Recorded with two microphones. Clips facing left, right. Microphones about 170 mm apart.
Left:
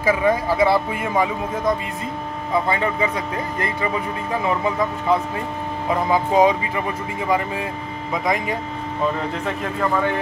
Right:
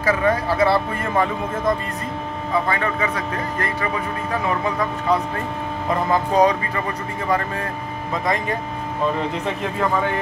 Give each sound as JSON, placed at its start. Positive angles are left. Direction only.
{"t": 0.0, "sound": "speech", "side_deg": 15}
{"t": 2.7, "sound": "speech", "side_deg": 20}
{"t": 5.9, "sound": "speech", "side_deg": 5}